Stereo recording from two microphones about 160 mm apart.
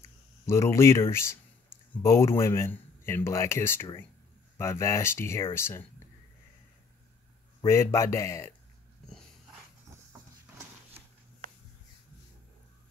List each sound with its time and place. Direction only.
0.5 s speech: 15° left (ahead or behind)
7.6 s speech: 15° left (ahead or behind)